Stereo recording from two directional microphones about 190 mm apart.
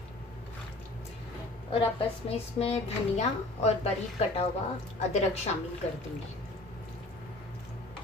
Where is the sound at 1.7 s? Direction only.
30° left (ahead or behind).